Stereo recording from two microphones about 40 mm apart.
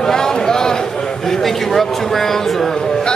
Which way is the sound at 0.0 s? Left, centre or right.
Centre.